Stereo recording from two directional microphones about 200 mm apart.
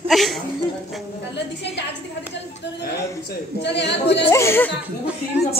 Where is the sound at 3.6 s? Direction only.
60° left (ahead or behind).